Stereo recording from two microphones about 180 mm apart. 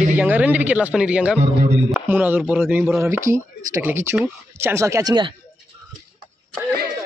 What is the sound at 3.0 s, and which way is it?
Speech, 15° right (ahead or behind).